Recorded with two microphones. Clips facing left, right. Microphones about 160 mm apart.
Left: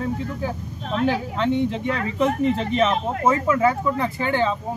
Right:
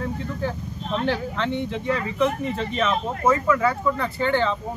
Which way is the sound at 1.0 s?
15° left (ahead or behind).